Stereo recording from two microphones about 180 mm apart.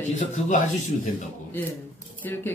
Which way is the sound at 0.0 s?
45° left (ahead or behind).